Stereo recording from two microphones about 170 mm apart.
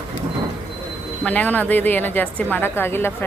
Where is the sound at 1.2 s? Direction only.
10° left (ahead or behind).